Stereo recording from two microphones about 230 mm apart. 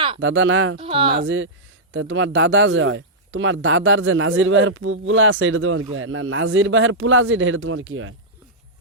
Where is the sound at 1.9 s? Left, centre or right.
Right.